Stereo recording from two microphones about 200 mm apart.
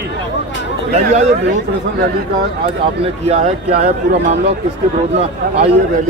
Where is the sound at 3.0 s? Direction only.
35° right (ahead or behind).